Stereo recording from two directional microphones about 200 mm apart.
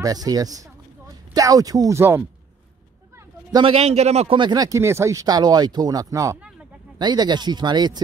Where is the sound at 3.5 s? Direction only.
30° right (ahead or behind).